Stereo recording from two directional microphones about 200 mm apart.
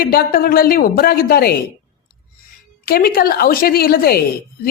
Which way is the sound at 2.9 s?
50° left (ahead or behind).